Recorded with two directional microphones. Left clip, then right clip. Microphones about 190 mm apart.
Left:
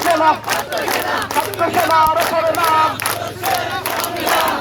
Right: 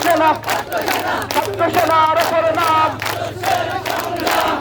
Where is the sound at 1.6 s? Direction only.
10° right (ahead or behind).